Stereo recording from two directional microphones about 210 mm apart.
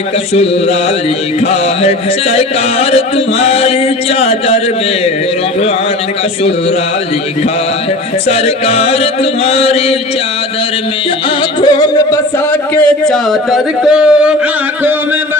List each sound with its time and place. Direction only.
1.5 s music: 30° left (ahead or behind)
3.4 s music: 30° left (ahead or behind)
8.3 s music: 30° left (ahead or behind)
11.6 s music: 20° left (ahead or behind)
12.7 s a man's voice: 5° left (ahead or behind)